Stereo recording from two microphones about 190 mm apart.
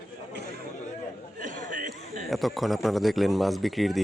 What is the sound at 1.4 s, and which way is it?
Chatter, 45° right (ahead or behind).